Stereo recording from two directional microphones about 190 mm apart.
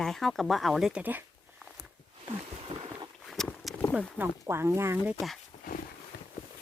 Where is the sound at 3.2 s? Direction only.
Centre (ahead or behind).